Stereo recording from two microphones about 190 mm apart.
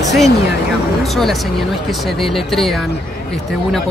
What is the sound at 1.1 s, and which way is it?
Speech, centre (ahead or behind).